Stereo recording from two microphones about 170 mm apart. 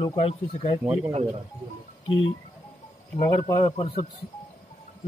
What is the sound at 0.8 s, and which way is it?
Speech, 10° right (ahead or behind).